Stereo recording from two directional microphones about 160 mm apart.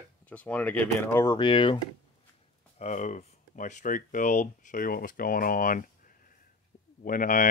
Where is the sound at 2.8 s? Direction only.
45° left (ahead or behind).